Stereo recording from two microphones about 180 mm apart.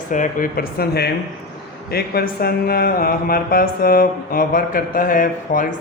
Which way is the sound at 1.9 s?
60° left (ahead or behind).